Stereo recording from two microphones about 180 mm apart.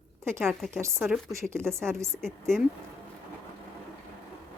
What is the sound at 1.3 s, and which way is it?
Speech, 15° right (ahead or behind).